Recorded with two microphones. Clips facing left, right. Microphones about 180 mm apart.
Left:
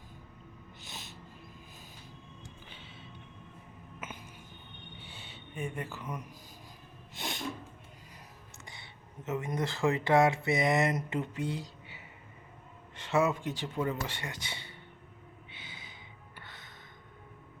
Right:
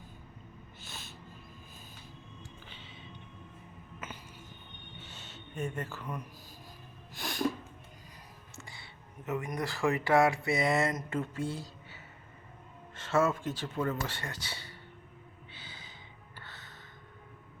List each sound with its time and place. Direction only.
0.8 s music: 20° left (ahead or behind)
4.9 s a sound: 10° left (ahead or behind)
7.1 s sneeze: 25° left (ahead or behind)
8.5 s speech: 20° left (ahead or behind)
15.5 s a sound: 15° left (ahead or behind)
16.4 s music: 15° left (ahead or behind)